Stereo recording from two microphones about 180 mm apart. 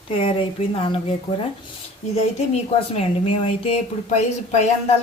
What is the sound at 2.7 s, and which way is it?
Speech, 30° left (ahead or behind).